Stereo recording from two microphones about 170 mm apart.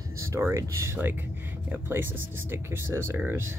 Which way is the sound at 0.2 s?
15° right (ahead or behind).